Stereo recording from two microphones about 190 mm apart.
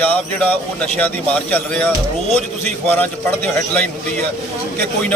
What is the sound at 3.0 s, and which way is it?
Speech, 10° left (ahead or behind).